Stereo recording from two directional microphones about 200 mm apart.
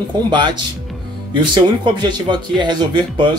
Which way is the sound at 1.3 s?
20° right (ahead or behind).